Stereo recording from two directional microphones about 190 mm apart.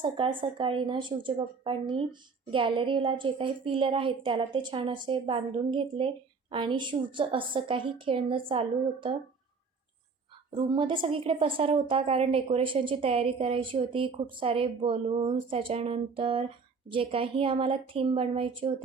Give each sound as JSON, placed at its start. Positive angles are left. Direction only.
{"t": 0.0, "sound": "a woman's voice", "side_deg": -25}
{"t": 10.5, "sound": "a woman's voice", "side_deg": -25}